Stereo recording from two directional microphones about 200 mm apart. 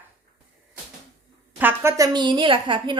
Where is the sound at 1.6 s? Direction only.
10° right (ahead or behind).